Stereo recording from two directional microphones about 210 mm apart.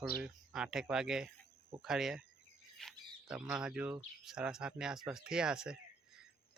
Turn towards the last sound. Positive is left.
turn(degrees=-5)  # may be behind; listen again after turning